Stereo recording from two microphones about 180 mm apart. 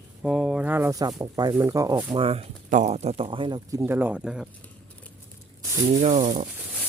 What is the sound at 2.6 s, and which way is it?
Speech, 45° right (ahead or behind).